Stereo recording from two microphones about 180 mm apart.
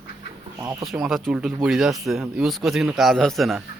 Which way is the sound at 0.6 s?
15° right (ahead or behind).